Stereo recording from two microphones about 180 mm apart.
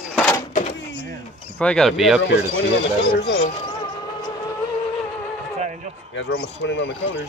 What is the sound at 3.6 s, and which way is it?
Vehicle, 30° left (ahead or behind).